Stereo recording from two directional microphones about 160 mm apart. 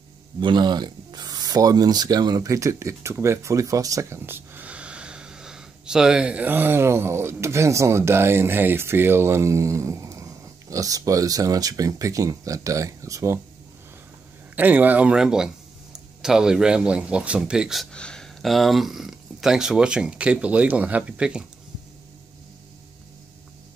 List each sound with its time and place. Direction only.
0.4 s speech: 30° right (ahead or behind)
14.5 s a man's voice: 10° right (ahead or behind)